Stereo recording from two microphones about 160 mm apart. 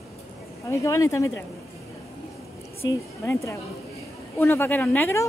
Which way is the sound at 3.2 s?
15° left (ahead or behind).